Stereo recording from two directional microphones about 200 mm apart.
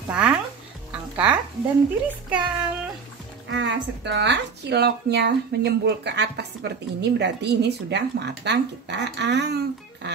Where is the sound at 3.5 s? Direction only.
60° right (ahead or behind).